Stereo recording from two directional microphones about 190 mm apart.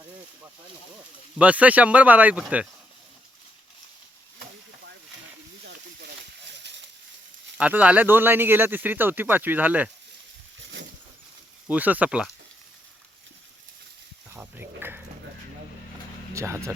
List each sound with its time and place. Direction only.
1.4 s speech: 5° right (ahead or behind)
5.6 s a sound: 65° right (ahead or behind)
7.6 s speech: 5° right (ahead or behind)
10.6 s a sound: 70° right (ahead or behind)
11.7 s speech: 10° right (ahead or behind)
14.3 s speech: 10° right (ahead or behind)
16.3 s speech: 15° right (ahead or behind)